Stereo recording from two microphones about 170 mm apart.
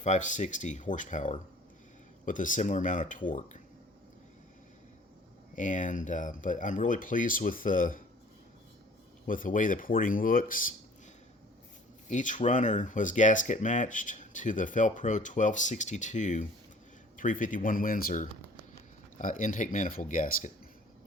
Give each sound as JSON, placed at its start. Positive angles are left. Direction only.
{"t": 0.0, "sound": "speech", "side_deg": 45}
{"t": 5.5, "sound": "speech", "side_deg": 50}
{"t": 9.2, "sound": "speech", "side_deg": 50}
{"t": 12.0, "sound": "speech", "side_deg": 50}